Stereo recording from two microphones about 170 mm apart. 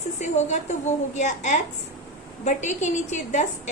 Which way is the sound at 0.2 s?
45° left (ahead or behind).